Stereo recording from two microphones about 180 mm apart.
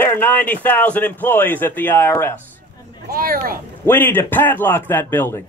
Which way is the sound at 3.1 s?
55° right (ahead or behind).